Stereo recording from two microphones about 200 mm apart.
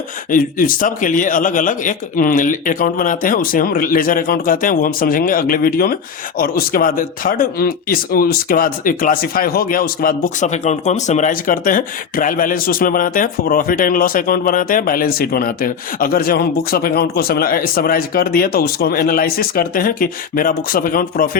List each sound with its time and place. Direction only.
0.3 s speech: 45° left (ahead or behind)